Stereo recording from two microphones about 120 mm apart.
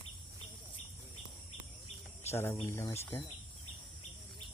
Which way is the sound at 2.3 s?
20° left (ahead or behind).